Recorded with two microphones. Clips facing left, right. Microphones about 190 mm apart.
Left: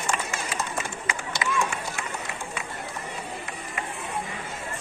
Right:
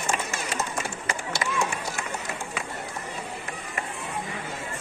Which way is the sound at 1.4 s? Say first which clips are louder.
Left 3 dB; 45° right (ahead or behind).